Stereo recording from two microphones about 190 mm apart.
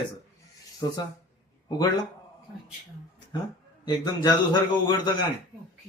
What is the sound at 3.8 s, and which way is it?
Speech, 20° left (ahead or behind).